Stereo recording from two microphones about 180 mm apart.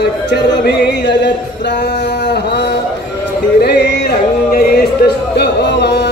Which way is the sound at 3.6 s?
70° left (ahead or behind).